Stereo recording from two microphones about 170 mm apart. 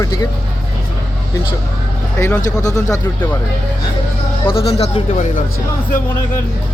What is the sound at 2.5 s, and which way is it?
Speech, 20° left (ahead or behind).